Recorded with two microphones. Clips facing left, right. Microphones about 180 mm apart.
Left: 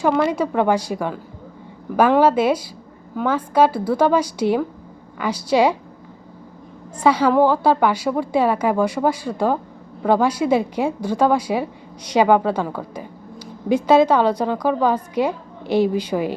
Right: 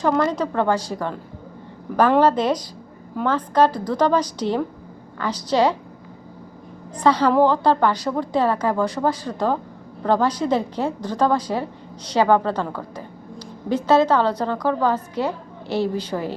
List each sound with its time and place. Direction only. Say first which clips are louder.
0.0 s a woman's voice: left 2 dB; 10° left (ahead or behind)
7.0 s a woman's voice: left 1 dB; 10° left (ahead or behind)